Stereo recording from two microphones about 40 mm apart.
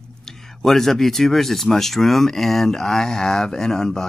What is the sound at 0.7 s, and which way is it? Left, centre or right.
Speech, centre.